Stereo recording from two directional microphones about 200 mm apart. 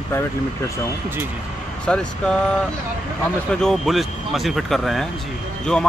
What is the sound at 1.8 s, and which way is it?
Speech, 5° left (ahead or behind).